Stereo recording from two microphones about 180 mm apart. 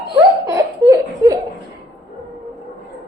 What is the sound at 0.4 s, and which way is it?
Laughter, 20° right (ahead or behind).